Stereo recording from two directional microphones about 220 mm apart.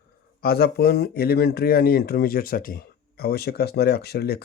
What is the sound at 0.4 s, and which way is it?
Speech, 45° left (ahead or behind).